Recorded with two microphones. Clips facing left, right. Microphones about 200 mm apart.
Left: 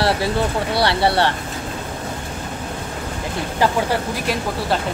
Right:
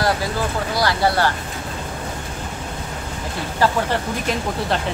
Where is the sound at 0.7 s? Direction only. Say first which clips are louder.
Left 1 dB; 30° left (ahead or behind).